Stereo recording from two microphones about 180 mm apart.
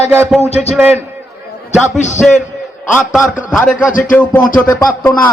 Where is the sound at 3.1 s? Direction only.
Centre (ahead or behind).